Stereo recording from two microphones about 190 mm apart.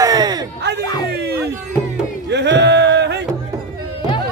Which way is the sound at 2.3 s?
65° right (ahead or behind).